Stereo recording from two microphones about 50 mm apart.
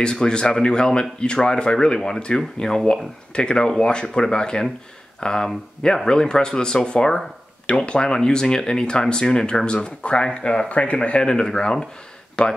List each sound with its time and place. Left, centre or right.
0.0 s speech: centre